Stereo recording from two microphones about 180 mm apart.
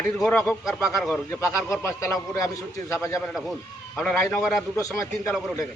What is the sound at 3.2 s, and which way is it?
Speech, centre (ahead or behind).